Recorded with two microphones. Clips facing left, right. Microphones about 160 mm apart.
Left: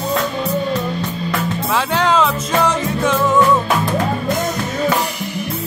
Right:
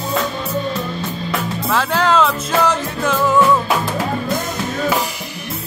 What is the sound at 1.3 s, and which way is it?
Music, centre (ahead or behind).